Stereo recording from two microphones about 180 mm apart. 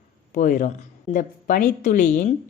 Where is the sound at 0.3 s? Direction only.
45° left (ahead or behind).